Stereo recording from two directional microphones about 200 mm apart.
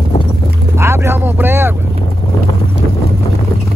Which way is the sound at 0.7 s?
15° right (ahead or behind).